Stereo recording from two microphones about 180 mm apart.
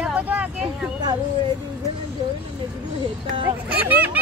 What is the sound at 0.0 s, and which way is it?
Vehicle, 10° right (ahead or behind).